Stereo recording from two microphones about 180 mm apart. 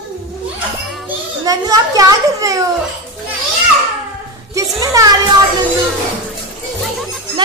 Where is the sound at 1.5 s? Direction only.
20° right (ahead or behind).